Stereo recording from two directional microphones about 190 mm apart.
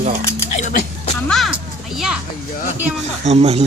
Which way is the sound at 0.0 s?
45° right (ahead or behind).